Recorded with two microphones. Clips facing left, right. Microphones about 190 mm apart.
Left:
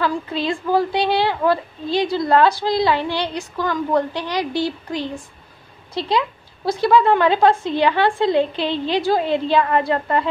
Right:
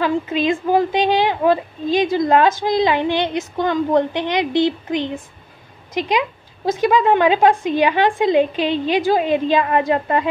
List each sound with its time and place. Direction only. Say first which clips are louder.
0.0 s a woman's voice: right 3 dB; 15° right (ahead or behind)